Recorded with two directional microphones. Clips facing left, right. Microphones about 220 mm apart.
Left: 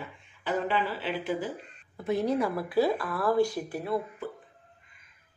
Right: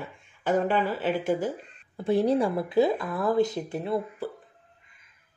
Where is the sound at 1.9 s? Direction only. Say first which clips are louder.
Right 4 dB; 30° right (ahead or behind).